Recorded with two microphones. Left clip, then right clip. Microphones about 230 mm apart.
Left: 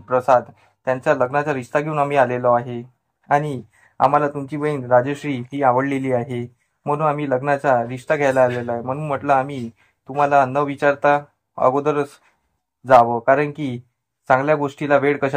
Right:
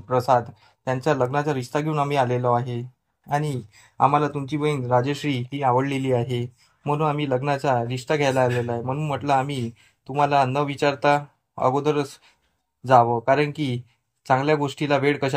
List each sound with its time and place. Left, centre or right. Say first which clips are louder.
0.1 s speech: left 4 dB; right
3.3 s speech: left 7 dB; right
11.1 s speech: left 3 dB; right
11.7 s speech: left 3 dB; right
15.0 s speech: left 4 dB; right